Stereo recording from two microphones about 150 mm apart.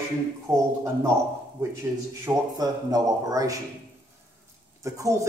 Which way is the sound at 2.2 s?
25° right (ahead or behind).